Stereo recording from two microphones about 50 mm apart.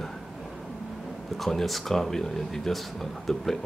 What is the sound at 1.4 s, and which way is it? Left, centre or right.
Speech, centre.